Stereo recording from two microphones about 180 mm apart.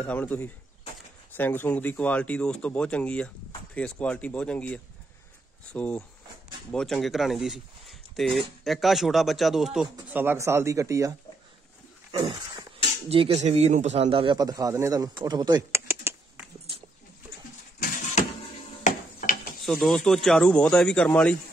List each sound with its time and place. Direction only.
0.0 s speech: 10° left (ahead or behind); by 11.1 s 20° right (ahead or behind)
12.1 s dog: 30° right (ahead or behind)
13.1 s a man's voice: 35° right (ahead or behind); by 16.2 s 15° right (ahead or behind)
18.9 s mechanisms: 40° left (ahead or behind)
19.6 s speech: centre (ahead or behind)